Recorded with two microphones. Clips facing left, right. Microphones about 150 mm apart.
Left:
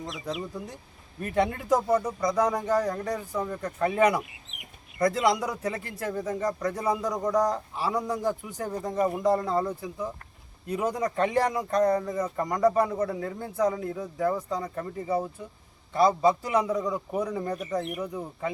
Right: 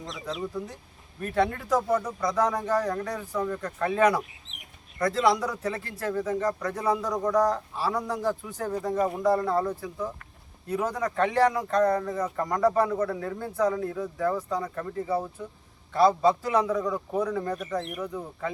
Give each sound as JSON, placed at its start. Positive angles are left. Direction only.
{"t": 0.0, "sound": "speech", "side_deg": 10}